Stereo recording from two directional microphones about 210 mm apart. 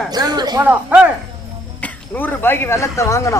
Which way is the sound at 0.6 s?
5° right (ahead or behind).